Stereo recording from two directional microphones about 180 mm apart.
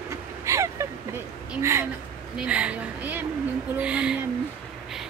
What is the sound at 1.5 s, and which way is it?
Speech, 15° right (ahead or behind).